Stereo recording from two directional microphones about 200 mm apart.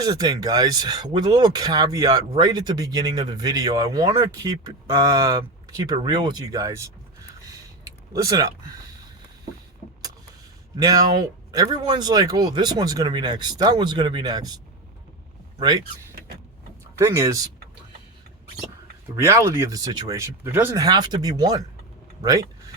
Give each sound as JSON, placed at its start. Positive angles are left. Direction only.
{"t": 0.0, "sound": "speech", "side_deg": -20}
{"t": 7.9, "sound": "a sound", "side_deg": -15}
{"t": 10.8, "sound": "speech", "side_deg": -20}
{"t": 17.0, "sound": "speech", "side_deg": -15}
{"t": 19.1, "sound": "speech", "side_deg": -15}